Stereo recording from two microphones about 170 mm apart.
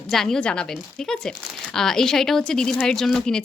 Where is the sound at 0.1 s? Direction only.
Centre (ahead or behind).